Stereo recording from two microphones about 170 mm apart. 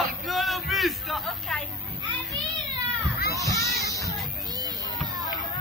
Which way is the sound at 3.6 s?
20° left (ahead or behind).